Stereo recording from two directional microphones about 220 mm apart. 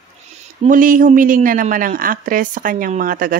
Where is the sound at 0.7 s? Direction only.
40° right (ahead or behind).